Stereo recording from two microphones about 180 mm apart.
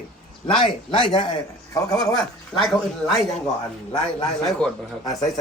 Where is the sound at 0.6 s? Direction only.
30° left (ahead or behind).